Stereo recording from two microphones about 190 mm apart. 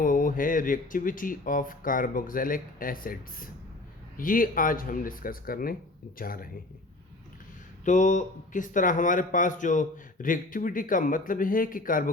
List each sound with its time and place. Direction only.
0.0 s speech: 45° left (ahead or behind)
7.9 s speech: 40° left (ahead or behind)